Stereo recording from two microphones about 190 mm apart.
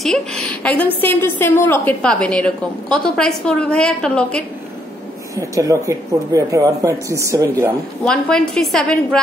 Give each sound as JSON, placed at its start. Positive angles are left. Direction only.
{"t": 0.0, "sound": "a woman's voice", "side_deg": 0}
{"t": 5.3, "sound": "speech", "side_deg": -15}
{"t": 8.0, "sound": "a woman's voice", "side_deg": 5}